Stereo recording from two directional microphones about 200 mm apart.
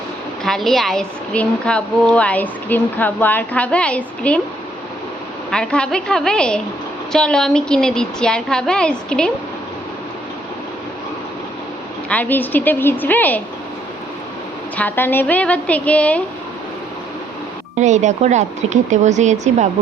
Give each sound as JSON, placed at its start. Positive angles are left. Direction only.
{"t": 0.4, "sound": "speech", "side_deg": 0}
{"t": 5.5, "sound": "speech", "side_deg": 5}
{"t": 12.0, "sound": "a woman's voice", "side_deg": 5}
{"t": 14.8, "sound": "a woman's voice", "side_deg": 10}
{"t": 17.7, "sound": "speech", "side_deg": -35}